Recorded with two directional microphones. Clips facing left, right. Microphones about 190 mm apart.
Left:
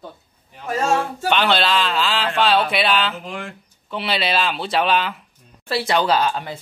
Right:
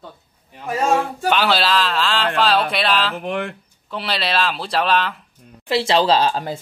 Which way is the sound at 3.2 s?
60° right (ahead or behind).